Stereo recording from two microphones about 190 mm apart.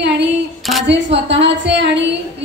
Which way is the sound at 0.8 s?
70° right (ahead or behind).